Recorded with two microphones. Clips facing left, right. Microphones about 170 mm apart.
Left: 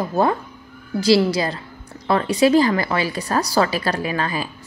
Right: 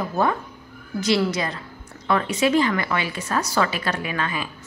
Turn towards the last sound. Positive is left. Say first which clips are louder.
# left 4 dB
turn(degrees=35)  # may be behind; listen again after turning